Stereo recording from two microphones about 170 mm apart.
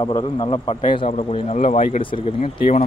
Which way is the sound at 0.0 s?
30° left (ahead or behind).